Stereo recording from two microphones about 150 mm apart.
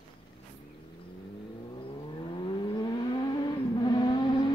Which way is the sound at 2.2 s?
35° left (ahead or behind).